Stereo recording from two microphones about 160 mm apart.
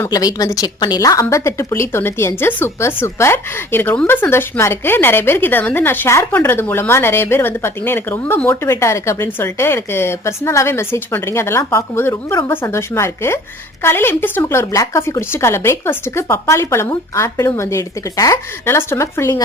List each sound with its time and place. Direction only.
0.0 s a woman's voice: 25° left (ahead or behind)